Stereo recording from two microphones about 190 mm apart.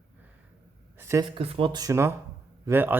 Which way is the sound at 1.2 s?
25° right (ahead or behind).